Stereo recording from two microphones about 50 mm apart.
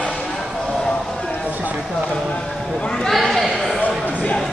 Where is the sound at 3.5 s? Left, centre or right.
Centre.